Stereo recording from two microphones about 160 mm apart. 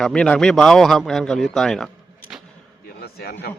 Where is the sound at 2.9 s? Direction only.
85° left.